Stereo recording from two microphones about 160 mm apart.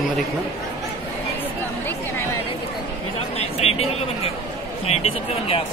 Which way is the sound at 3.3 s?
40° left (ahead or behind).